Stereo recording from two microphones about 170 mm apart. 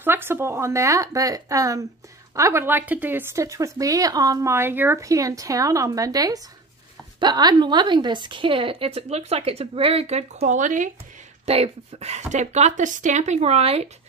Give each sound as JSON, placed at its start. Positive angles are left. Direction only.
{"t": 0.0, "sound": "a woman's voice", "side_deg": -15}
{"t": 10.4, "sound": "speech", "side_deg": -50}
{"t": 11.4, "sound": "a woman's voice", "side_deg": -35}